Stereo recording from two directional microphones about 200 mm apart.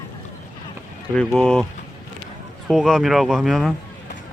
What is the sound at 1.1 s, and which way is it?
Speech, 5° left (ahead or behind).